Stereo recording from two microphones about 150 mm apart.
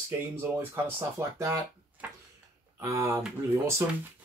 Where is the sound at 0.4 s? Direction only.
15° right (ahead or behind).